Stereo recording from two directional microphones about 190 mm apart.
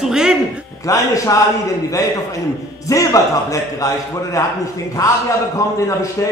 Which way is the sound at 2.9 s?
15° left (ahead or behind).